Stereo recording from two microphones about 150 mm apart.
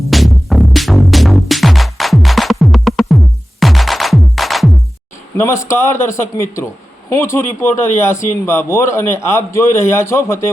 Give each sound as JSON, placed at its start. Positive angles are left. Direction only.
{"t": 0.1, "sound": "music", "side_deg": 0}
{"t": 5.6, "sound": "a man's voice", "side_deg": 20}